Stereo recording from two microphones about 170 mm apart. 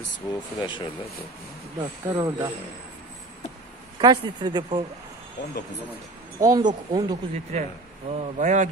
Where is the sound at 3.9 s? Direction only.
25° right (ahead or behind).